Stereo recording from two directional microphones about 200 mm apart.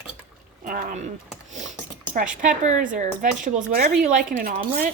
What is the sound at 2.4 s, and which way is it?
Speech, 40° right (ahead or behind).